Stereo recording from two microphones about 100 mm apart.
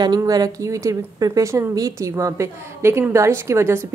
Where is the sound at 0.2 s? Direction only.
35° right (ahead or behind).